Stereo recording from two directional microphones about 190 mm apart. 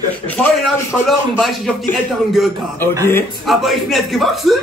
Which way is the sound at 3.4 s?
Centre (ahead or behind).